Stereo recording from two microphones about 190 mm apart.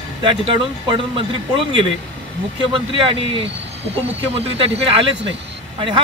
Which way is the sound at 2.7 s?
25° right (ahead or behind).